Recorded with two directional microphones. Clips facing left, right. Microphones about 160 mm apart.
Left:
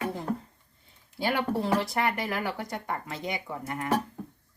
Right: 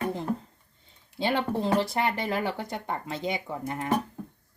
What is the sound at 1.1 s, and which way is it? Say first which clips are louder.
Speech: right 1 dB; 25° right (ahead or behind).